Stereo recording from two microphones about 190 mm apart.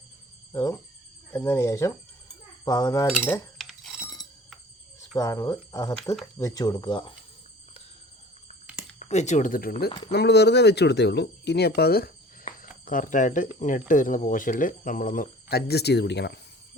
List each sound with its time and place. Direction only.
0.5 s speech: 15° left (ahead or behind)
3.1 s cutlery: 10° left (ahead or behind)
4.9 s speech: 15° left (ahead or behind)
9.0 s speech: 35° left (ahead or behind)
10.1 s speech: 60° left (ahead or behind)